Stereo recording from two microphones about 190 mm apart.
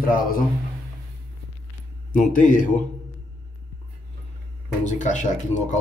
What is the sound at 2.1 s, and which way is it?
Speech, 45° left (ahead or behind).